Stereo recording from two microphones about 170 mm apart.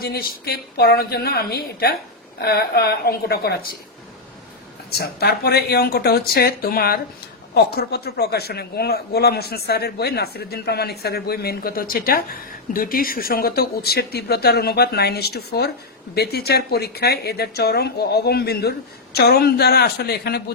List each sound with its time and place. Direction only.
0.0 s speech: 65° left (ahead or behind)
4.9 s speech: 70° left (ahead or behind)